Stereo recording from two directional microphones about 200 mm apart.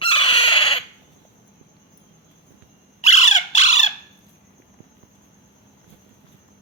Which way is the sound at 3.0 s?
35° left (ahead or behind).